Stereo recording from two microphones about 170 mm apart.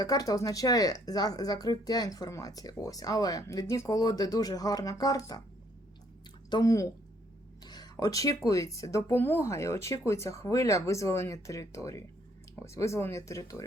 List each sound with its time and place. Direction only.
0.0 s speech: 20° left (ahead or behind)
6.5 s speech: 20° left (ahead or behind)